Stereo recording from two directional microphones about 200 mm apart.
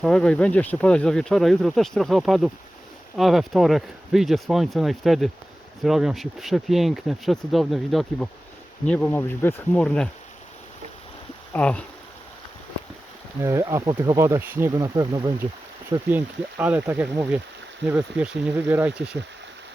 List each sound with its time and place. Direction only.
0.0 s speech: 5° left (ahead or behind)
11.5 s speech: 5° left (ahead or behind)
13.4 s speech: 15° right (ahead or behind)
15.9 s speech: 10° right (ahead or behind)